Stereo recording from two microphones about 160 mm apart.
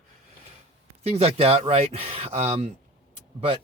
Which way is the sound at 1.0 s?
40° right (ahead or behind).